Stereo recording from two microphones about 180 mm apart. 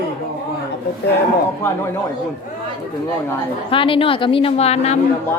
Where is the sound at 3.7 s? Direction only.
30° left (ahead or behind).